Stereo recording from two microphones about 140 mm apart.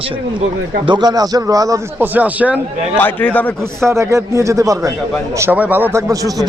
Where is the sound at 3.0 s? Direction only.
10° left (ahead or behind).